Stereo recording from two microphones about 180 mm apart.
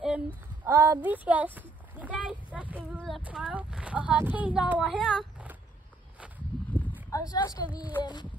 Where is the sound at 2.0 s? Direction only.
10° right (ahead or behind).